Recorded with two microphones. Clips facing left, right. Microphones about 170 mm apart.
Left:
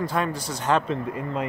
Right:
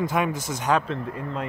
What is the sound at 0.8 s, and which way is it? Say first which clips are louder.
Speech: left 2 dB; centre (ahead or behind).